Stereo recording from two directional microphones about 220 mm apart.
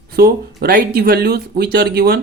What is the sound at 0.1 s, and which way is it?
Speech, 45° right (ahead or behind).